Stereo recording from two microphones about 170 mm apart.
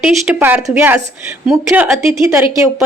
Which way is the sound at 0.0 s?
5° right (ahead or behind).